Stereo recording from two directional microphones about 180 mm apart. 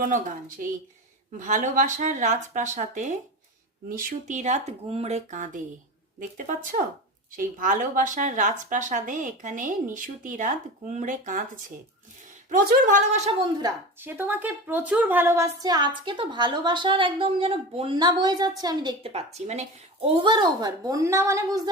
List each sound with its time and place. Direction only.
0.0 s a woman's voice: 45° right (ahead or behind)
14.0 s a woman's voice: 10° right (ahead or behind)